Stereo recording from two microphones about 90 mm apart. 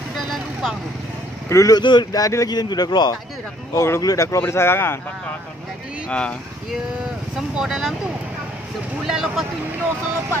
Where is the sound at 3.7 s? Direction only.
30° left (ahead or behind).